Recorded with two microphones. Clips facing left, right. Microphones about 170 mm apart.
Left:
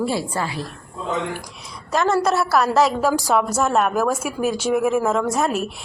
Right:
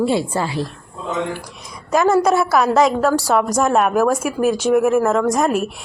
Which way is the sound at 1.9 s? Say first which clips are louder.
Right 4 dB; centre (ahead or behind).